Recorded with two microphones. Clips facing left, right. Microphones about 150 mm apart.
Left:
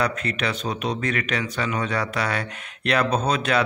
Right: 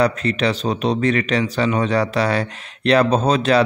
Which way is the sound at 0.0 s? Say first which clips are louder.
Right 7 dB; 30° right (ahead or behind).